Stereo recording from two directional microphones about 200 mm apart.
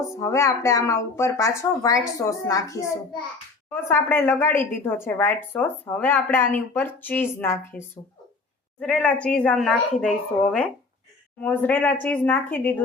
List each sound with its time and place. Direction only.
0.2 s a woman's voice: 15° left (ahead or behind)